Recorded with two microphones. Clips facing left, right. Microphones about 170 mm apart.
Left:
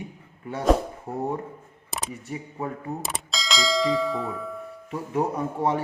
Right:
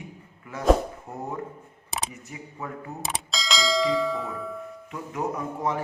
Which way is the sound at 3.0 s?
Centre (ahead or behind).